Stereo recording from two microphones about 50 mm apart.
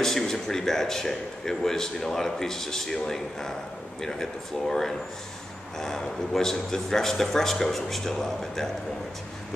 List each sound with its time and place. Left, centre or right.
0.0 s speech: centre